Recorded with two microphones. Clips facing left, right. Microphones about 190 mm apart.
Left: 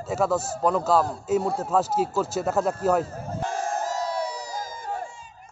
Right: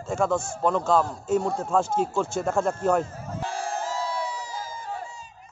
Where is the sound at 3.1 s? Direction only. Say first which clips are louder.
Left 2 dB; 40° left (ahead or behind).